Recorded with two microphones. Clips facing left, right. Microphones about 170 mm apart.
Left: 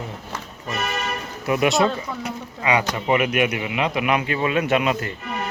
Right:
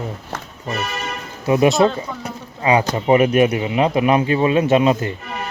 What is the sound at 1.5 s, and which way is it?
Speech, 30° right (ahead or behind).